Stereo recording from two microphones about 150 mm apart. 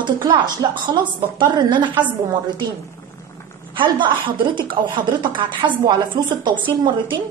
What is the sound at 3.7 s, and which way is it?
A woman's voice, 35° right (ahead or behind).